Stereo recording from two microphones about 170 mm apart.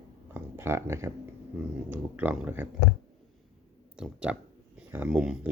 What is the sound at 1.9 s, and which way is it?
Speech, 10° right (ahead or behind).